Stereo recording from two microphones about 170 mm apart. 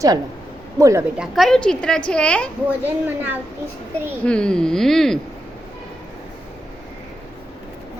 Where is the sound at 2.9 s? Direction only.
10° right (ahead or behind).